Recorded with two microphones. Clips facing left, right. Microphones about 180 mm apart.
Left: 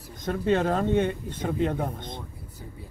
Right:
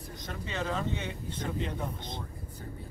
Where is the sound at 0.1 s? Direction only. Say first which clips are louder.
Left 15 dB; 50° left (ahead or behind).